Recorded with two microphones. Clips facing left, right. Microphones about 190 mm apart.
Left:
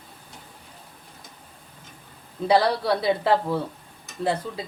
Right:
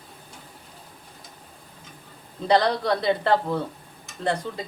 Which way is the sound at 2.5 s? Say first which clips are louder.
Even; 5° left (ahead or behind).